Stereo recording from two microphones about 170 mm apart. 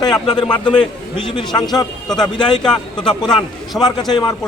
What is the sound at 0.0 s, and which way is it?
Speech, 25° left (ahead or behind).